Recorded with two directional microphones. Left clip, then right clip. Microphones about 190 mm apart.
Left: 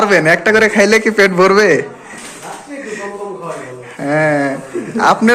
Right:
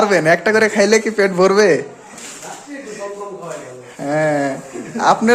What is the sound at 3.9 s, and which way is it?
A man's voice, 10° right (ahead or behind).